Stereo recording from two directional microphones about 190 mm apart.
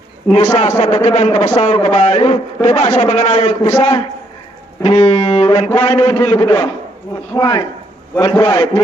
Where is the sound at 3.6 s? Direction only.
20° left (ahead or behind).